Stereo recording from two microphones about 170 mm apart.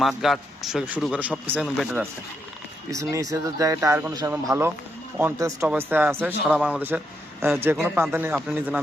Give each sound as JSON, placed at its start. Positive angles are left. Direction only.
{"t": 0.0, "sound": "speech", "side_deg": 0}
{"t": 2.9, "sound": "speech", "side_deg": -20}